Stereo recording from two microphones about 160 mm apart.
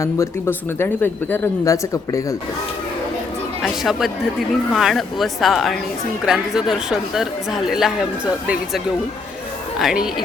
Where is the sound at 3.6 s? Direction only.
Centre (ahead or behind).